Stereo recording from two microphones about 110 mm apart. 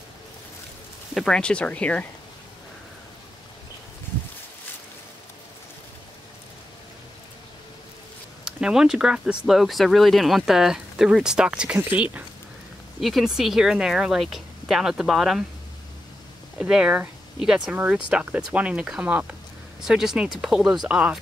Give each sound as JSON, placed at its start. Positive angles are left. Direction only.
{"t": 1.1, "sound": "speech", "side_deg": 5}
{"t": 8.5, "sound": "speech", "side_deg": -5}
{"t": 13.0, "sound": "speech", "side_deg": -5}
{"t": 16.5, "sound": "speech", "side_deg": -10}